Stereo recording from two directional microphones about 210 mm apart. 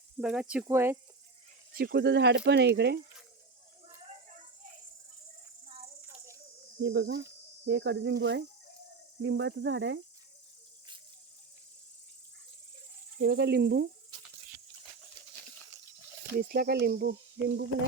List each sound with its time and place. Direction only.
0.2 s speech: 5° right (ahead or behind)
1.7 s speech: 45° right (ahead or behind)
6.8 s speech: 55° right (ahead or behind)
13.1 s speech: 50° right (ahead or behind)
16.4 s speech: 45° right (ahead or behind)